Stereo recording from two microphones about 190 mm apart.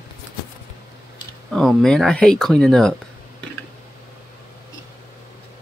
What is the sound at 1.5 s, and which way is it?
Speech, 5° left (ahead or behind).